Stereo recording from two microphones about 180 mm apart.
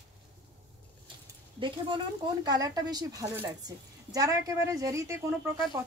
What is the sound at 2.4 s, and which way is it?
Speech, 20° right (ahead or behind).